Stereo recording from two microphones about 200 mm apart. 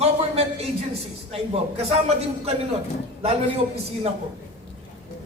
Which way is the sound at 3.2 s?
30° right (ahead or behind).